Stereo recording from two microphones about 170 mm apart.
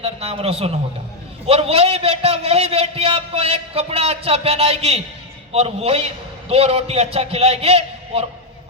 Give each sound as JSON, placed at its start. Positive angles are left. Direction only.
{"t": 0.0, "sound": "a man's voice", "side_deg": -35}